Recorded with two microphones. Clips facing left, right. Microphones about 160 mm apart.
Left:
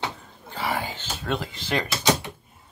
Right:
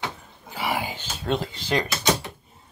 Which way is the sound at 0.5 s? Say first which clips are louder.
Right 1 dB; 10° right (ahead or behind).